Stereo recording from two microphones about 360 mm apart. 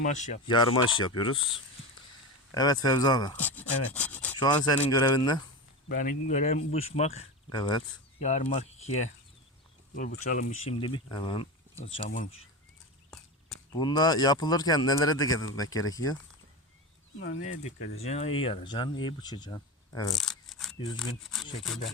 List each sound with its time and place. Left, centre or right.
0.0 s speech: left
2.6 s speech: centre
5.9 s speech: left
9.9 s speech: left
13.7 s speech: centre
17.2 s speech: left
17.4 s speech: centre
20.7 s speech: centre
21.0 s speech: centre